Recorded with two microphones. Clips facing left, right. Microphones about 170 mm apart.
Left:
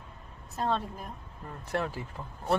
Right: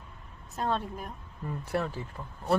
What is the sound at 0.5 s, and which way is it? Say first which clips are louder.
A woman's voice: even; centre (ahead or behind).